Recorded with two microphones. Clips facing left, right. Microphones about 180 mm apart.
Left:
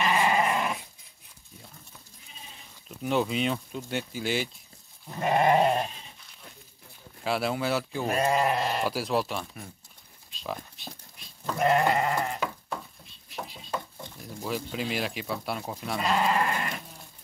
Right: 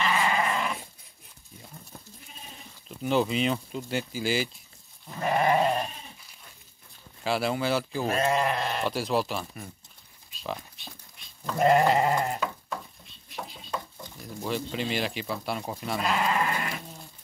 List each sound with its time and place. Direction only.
0.0 s dog: 15° left (ahead or behind)
2.9 s speech: centre (ahead or behind)
5.2 s sheep: 20° left (ahead or behind)
7.2 s speech: centre (ahead or behind)
10.3 s a sound: centre (ahead or behind)
11.5 s sheep: 30° right (ahead or behind)
13.3 s stir: centre (ahead or behind)
14.2 s speech: centre (ahead or behind)